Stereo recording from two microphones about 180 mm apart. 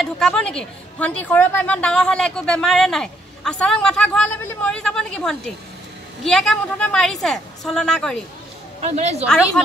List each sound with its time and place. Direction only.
0.0 s a woman's voice: 5° left (ahead or behind)
8.8 s a woman's voice: 35° right (ahead or behind)